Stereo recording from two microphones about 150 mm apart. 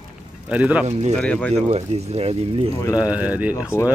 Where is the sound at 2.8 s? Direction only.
25° left (ahead or behind).